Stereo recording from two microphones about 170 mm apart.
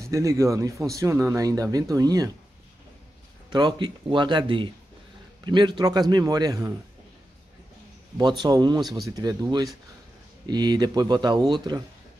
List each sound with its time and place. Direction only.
0.1 s speech: 20° right (ahead or behind)
3.4 s speech: 25° right (ahead or behind)
8.2 s speech: 25° right (ahead or behind)